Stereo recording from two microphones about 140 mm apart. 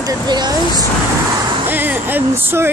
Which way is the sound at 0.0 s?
30° right (ahead or behind).